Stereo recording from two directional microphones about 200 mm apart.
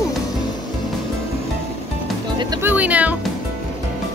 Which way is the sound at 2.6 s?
10° right (ahead or behind).